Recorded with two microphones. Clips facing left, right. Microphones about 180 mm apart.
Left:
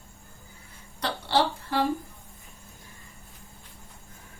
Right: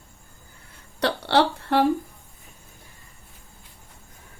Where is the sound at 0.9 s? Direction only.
70° right (ahead or behind).